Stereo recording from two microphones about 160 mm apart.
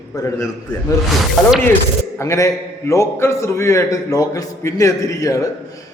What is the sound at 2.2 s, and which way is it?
A man's voice, 20° left (ahead or behind).